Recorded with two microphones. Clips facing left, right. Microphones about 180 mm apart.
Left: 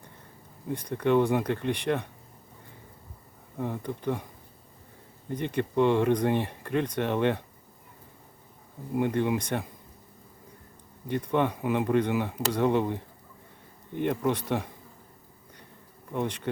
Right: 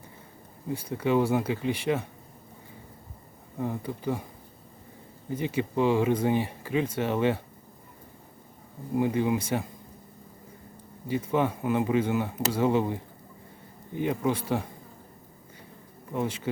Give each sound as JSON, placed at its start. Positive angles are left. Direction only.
{"t": 0.7, "sound": "speech", "side_deg": -5}
{"t": 3.6, "sound": "speech", "side_deg": -5}
{"t": 5.3, "sound": "speech", "side_deg": -5}
{"t": 9.0, "sound": "speech", "side_deg": -5}
{"t": 11.1, "sound": "speech", "side_deg": -5}
{"t": 16.1, "sound": "speech", "side_deg": -5}